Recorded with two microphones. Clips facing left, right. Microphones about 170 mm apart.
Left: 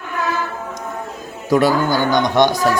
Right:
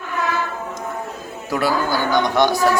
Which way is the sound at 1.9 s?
20° left (ahead or behind).